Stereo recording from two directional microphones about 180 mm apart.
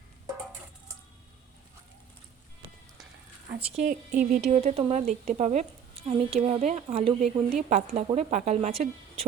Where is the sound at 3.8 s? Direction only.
45° right (ahead or behind).